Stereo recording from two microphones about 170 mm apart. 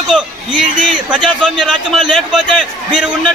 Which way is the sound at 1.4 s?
5° right (ahead or behind).